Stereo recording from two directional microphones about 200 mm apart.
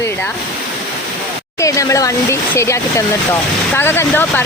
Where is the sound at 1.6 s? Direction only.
15° left (ahead or behind).